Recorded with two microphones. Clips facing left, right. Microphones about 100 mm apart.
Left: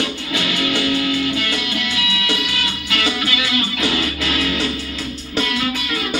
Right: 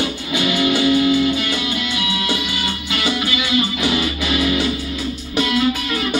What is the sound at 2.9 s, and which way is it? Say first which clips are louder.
Music: even; 20° right (ahead or behind).